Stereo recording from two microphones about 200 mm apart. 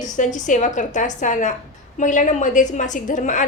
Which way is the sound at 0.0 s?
40° left (ahead or behind).